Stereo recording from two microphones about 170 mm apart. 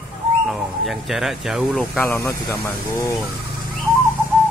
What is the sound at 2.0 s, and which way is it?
Speech, 15° left (ahead or behind).